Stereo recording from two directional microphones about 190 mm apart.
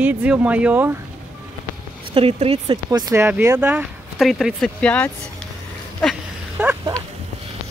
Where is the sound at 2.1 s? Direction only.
30° right (ahead or behind).